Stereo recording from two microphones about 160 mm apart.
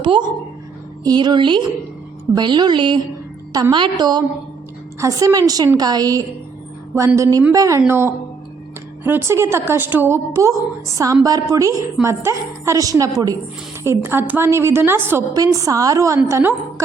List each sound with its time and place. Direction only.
0.0 s a woman's voice: 30° right (ahead or behind)